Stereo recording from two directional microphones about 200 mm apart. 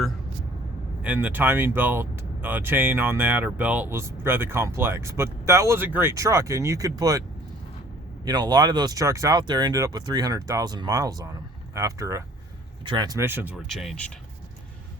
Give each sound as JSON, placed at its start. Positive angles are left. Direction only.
{"t": 1.0, "sound": "speech", "side_deg": -10}